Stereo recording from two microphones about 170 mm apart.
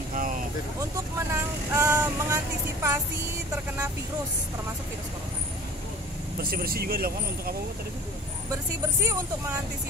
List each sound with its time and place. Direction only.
0.1 s vehicle: 55° right (ahead or behind)
1.3 s child singing: 15° right (ahead or behind)
6.4 s speech: 60° right (ahead or behind)